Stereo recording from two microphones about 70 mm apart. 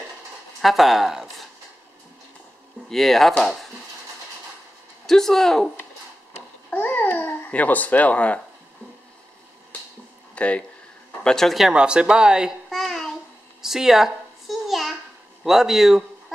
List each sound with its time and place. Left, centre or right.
0.6 s speech: centre
2.9 s speech: centre
5.0 s speech: centre
6.7 s a child's voice: left
10.3 s speech: centre
11.2 s speech: centre
11.7 s speech: centre
12.7 s a sound: centre
15.4 s a man's voice: centre